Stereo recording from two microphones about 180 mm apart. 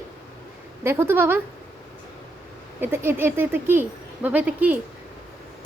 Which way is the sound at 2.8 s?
10° right (ahead or behind).